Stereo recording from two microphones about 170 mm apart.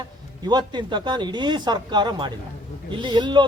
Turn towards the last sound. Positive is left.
turn(degrees=-25)  # may be behind; listen again after turning